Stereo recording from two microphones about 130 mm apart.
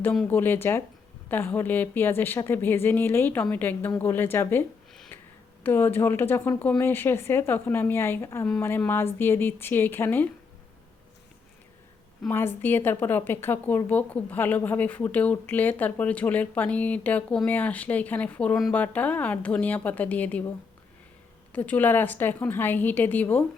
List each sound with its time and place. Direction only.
0.0 s a woman's voice: 10° left (ahead or behind)
5.6 s a woman's voice: 15° left (ahead or behind)
12.3 s a woman's voice: 15° left (ahead or behind)
21.5 s a woman's voice: 15° left (ahead or behind)